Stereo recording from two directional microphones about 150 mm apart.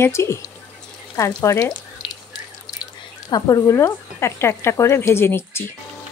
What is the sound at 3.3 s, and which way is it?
Speech, 25° left (ahead or behind).